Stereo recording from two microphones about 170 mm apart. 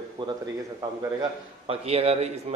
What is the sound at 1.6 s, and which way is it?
Speech, 35° right (ahead or behind).